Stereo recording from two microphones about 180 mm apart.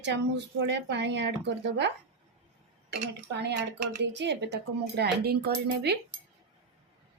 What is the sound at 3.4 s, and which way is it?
A woman's voice, 70° right (ahead or behind).